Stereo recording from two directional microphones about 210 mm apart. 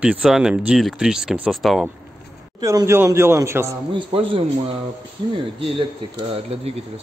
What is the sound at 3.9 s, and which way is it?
Speech, 25° right (ahead or behind).